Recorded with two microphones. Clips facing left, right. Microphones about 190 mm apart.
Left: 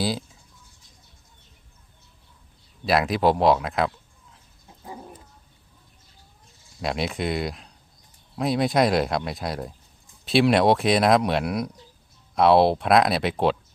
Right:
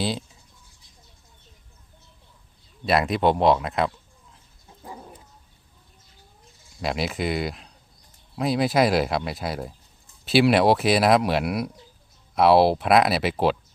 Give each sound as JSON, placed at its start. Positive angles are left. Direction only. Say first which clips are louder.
{"t": 2.8, "sound": "speech", "louder": "even", "side_deg": 0}
{"t": 6.8, "sound": "speech", "louder": "even", "side_deg": 0}